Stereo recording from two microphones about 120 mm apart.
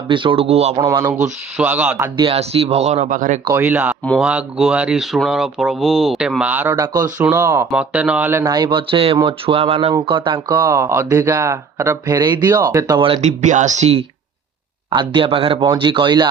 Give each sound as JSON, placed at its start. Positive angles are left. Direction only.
{"t": 0.1, "sound": "speech", "side_deg": -45}
{"t": 0.8, "sound": "speech", "side_deg": -20}
{"t": 2.1, "sound": "speech", "side_deg": -50}
{"t": 3.5, "sound": "speech", "side_deg": -15}
{"t": 6.7, "sound": "speech", "side_deg": -30}
{"t": 7.2, "sound": "speech", "side_deg": -15}
{"t": 7.7, "sound": "speech", "side_deg": -10}
{"t": 8.4, "sound": "speech", "side_deg": -35}
{"t": 9.9, "sound": "speech", "side_deg": -45}
{"t": 10.8, "sound": "speech", "side_deg": -20}
{"t": 12.5, "sound": "speech", "side_deg": -20}
{"t": 13.0, "sound": "speech", "side_deg": -45}
{"t": 13.2, "sound": "speech", "side_deg": -85}
{"t": 14.8, "sound": "speech", "side_deg": -40}